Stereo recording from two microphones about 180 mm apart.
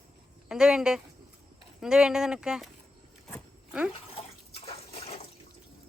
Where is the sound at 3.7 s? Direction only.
5° right (ahead or behind).